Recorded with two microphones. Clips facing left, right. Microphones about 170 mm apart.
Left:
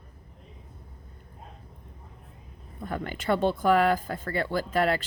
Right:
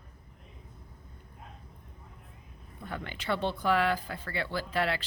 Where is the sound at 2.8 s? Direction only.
40° left (ahead or behind).